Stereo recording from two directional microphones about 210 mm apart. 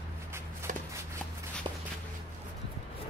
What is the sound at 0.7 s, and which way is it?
Shuffle, 40° right (ahead or behind).